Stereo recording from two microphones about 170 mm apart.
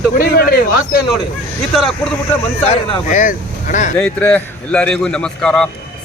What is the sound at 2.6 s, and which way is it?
Speech, 35° left (ahead or behind).